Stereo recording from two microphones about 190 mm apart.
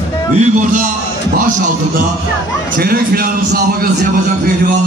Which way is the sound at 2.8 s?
50° right (ahead or behind).